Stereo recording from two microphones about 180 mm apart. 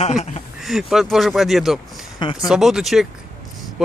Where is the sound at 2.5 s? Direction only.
5° right (ahead or behind).